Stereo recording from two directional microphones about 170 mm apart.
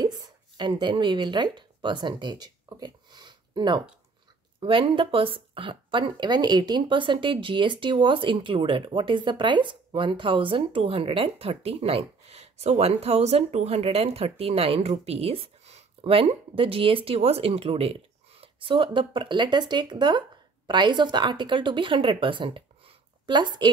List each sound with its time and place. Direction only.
0.0 s speech: 25° right (ahead or behind)